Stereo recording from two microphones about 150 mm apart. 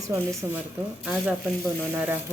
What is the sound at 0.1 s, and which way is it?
Speech, 20° right (ahead or behind).